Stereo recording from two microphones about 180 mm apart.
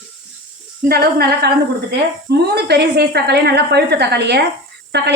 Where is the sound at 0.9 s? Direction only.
60° right (ahead or behind).